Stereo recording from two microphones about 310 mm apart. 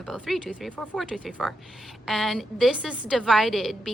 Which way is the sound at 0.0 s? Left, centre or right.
Centre.